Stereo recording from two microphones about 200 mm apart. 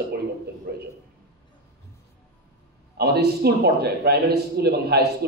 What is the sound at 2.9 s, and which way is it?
A man's voice, 55° right (ahead or behind).